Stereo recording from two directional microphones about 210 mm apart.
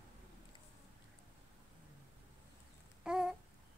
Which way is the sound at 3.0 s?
5° right (ahead or behind).